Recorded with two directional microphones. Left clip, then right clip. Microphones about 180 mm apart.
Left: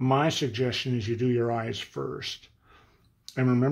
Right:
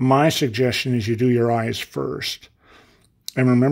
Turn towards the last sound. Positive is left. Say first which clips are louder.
# right 8 dB
turn(degrees=-35)  # may be behind; listen again after turning